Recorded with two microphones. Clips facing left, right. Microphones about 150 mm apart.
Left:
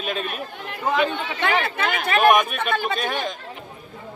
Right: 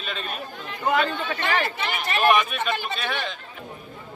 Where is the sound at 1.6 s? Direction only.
55° left (ahead or behind).